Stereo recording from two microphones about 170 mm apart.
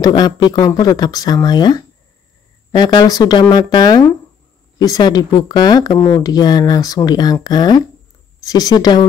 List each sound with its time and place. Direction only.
0.0 s speech: 25° left (ahead or behind)